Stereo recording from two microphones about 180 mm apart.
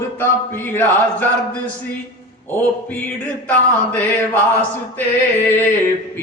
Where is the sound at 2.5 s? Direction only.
10° left (ahead or behind).